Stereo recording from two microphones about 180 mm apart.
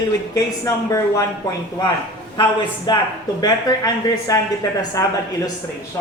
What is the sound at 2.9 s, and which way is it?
Speech, 25° left (ahead or behind).